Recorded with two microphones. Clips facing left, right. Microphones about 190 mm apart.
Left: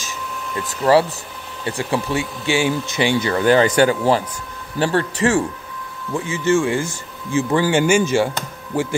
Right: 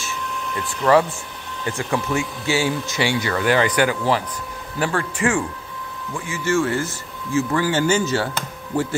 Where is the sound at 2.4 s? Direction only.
15° left (ahead or behind); by 5.4 s 35° left (ahead or behind).